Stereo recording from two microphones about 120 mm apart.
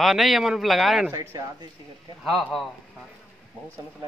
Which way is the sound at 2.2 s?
Centre (ahead or behind).